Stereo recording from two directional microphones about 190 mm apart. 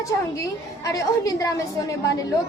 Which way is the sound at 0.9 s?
15° left (ahead or behind).